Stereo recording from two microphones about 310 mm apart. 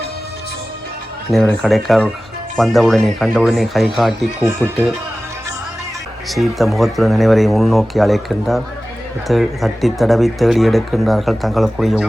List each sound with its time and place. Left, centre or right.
1.3 s speech: centre
6.2 s speech: centre